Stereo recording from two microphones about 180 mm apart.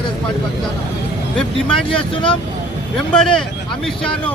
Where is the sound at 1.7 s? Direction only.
30° left (ahead or behind).